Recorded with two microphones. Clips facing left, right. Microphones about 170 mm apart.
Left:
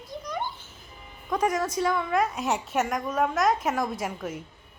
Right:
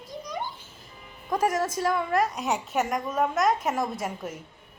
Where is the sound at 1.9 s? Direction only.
Centre (ahead or behind).